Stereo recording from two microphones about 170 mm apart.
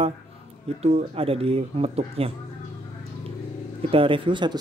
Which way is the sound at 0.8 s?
35° right (ahead or behind).